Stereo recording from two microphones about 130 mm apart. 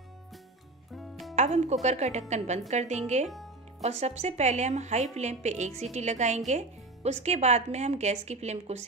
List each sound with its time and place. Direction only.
0.9 s music: centre (ahead or behind)
1.3 s a woman's voice: 60° right (ahead or behind)